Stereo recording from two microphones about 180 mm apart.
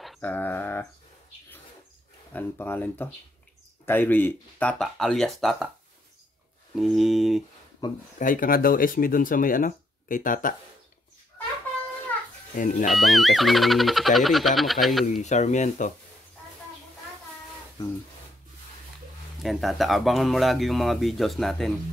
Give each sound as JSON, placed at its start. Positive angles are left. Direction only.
{"t": 0.2, "sound": "speech", "side_deg": 10}
{"t": 2.3, "sound": "speech", "side_deg": 10}
{"t": 6.7, "sound": "speech", "side_deg": 0}
{"t": 7.8, "sound": "speech", "side_deg": 20}
{"t": 8.2, "sound": "speech", "side_deg": 50}
{"t": 12.5, "sound": "speech", "side_deg": 45}
{"t": 12.8, "sound": "speech", "side_deg": 0}
{"t": 15.0, "sound": "speech", "side_deg": 40}
{"t": 19.4, "sound": "speech", "side_deg": 0}